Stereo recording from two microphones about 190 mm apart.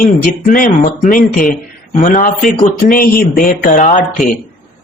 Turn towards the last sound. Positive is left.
turn(degrees=40)  # may be behind; listen again after turning